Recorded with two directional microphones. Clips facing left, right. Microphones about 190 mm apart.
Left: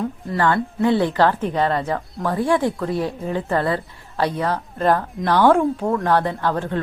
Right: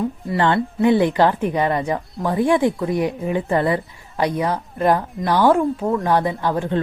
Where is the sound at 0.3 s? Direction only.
20° right (ahead or behind); by 6.1 s centre (ahead or behind).